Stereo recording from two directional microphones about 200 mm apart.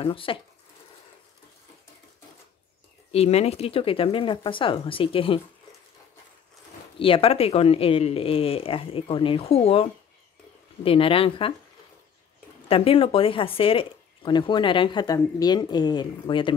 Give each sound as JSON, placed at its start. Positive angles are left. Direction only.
{"t": 0.0, "sound": "speech", "side_deg": 25}
{"t": 3.1, "sound": "speech", "side_deg": 30}
{"t": 7.0, "sound": "speech", "side_deg": 30}
{"t": 12.6, "sound": "speech", "side_deg": 30}